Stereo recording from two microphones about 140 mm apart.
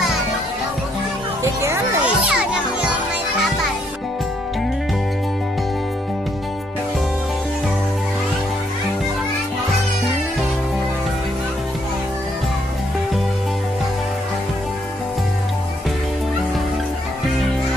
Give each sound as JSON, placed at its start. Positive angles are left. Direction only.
{"t": 1.4, "sound": "children playing", "side_deg": -20}
{"t": 2.2, "sound": "children playing", "side_deg": -5}